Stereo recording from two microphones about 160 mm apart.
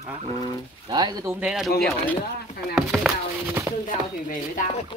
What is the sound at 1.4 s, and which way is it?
Speech, 5° right (ahead or behind).